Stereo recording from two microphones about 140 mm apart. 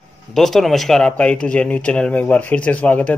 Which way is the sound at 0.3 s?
Centre (ahead or behind).